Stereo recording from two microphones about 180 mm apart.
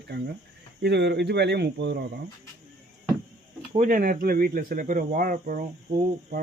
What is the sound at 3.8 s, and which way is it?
Speech, 50° right (ahead or behind).